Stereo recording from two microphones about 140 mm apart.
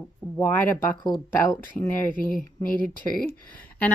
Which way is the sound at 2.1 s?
80° left.